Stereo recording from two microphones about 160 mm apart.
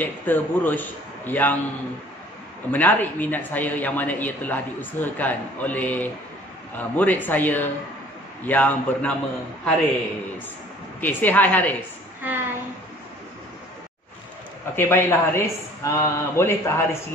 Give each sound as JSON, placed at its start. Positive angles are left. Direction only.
{"t": 0.0, "sound": "speech", "side_deg": 10}
{"t": 2.7, "sound": "speech", "side_deg": 10}
{"t": 11.0, "sound": "speech", "side_deg": 10}
{"t": 12.2, "sound": "a sound", "side_deg": -10}
{"t": 14.8, "sound": "speech", "side_deg": 15}